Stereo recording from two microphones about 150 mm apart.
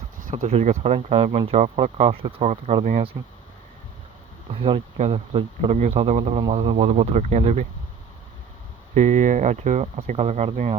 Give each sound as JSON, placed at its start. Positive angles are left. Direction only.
{"t": 0.2, "sound": "speech", "side_deg": -55}
{"t": 4.5, "sound": "speech", "side_deg": -40}
{"t": 9.0, "sound": "speech", "side_deg": -55}